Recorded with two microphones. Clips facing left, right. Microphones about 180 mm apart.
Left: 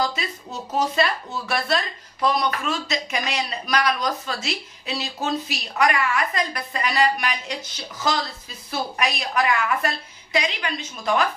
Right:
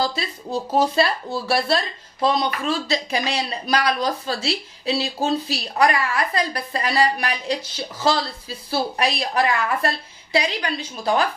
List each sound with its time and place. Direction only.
0.0 s speech: 30° right (ahead or behind)